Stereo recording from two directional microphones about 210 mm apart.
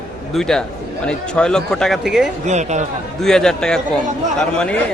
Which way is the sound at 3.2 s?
Centre (ahead or behind).